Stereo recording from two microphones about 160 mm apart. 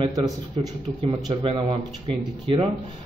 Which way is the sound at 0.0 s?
20° right (ahead or behind).